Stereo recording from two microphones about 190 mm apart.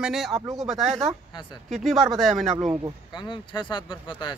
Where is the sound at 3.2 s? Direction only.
25° left (ahead or behind).